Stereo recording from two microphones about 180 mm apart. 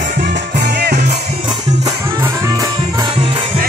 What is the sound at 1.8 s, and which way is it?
Music, 20° right (ahead or behind).